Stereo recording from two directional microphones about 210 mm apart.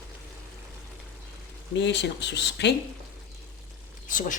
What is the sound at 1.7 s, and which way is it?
Speech, 55° left (ahead or behind).